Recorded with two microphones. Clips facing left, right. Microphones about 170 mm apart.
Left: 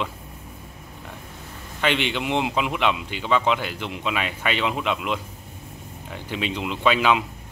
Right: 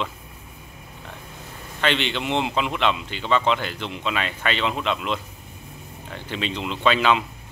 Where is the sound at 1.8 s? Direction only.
10° left (ahead or behind).